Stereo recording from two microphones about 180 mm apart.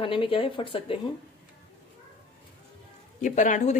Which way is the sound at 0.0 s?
30° left (ahead or behind).